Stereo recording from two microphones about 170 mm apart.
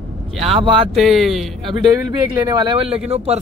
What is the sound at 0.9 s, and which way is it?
Speech, centre (ahead or behind).